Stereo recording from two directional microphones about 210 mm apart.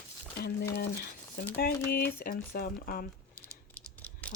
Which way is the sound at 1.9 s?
45° left (ahead or behind).